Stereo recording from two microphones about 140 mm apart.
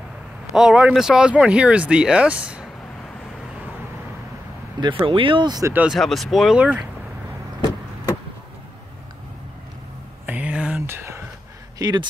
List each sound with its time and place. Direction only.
0.6 s speech: 5° right (ahead or behind)
4.7 s speech: 35° right (ahead or behind)
5.7 s speech: 10° right (ahead or behind)
5.9 s speech: centre (ahead or behind)
10.2 s a sound: 10° right (ahead or behind)
11.8 s speech: 30° right (ahead or behind)